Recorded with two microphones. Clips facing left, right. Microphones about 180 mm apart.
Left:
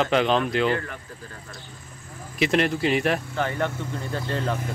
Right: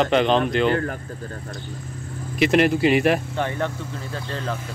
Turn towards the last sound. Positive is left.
turn(degrees=0)  # may be behind; listen again after turning